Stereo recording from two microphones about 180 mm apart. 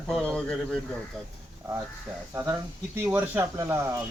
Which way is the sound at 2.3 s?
10° right (ahead or behind).